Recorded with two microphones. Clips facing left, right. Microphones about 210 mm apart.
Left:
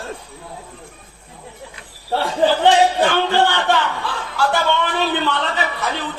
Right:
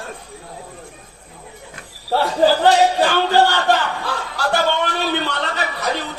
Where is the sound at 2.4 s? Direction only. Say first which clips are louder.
Even; 40° right (ahead or behind).